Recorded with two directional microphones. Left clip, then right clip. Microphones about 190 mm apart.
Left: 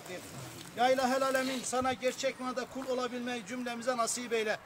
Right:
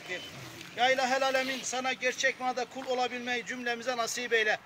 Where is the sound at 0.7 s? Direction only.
65° left (ahead or behind).